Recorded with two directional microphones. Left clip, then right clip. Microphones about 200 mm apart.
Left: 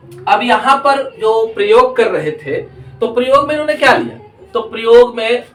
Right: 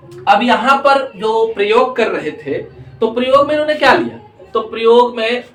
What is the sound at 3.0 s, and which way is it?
Speech, centre (ahead or behind).